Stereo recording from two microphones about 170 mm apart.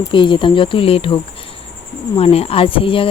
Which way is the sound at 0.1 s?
30° left (ahead or behind).